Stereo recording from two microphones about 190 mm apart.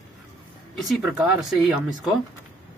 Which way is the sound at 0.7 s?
Centre (ahead or behind).